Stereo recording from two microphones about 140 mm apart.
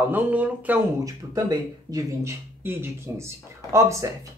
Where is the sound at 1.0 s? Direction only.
25° right (ahead or behind).